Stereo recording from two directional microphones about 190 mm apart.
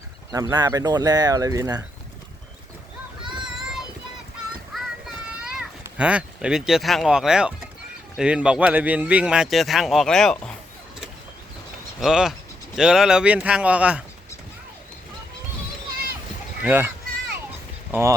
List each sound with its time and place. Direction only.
0.3 s speech: 20° right (ahead or behind)
3.4 s child singing: 5° right (ahead or behind)
4.7 s a sound: centre (ahead or behind)
8.1 s speech: 5° right (ahead or behind)
11.9 s speech: centre (ahead or behind)
16.6 s speech: 10° right (ahead or behind)
17.9 s speech: 10° right (ahead or behind)